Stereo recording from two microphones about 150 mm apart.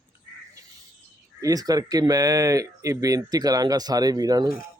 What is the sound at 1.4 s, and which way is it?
Speech, 25° right (ahead or behind).